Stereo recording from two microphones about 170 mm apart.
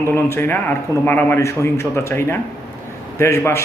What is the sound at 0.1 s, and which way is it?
Speech, 10° left (ahead or behind).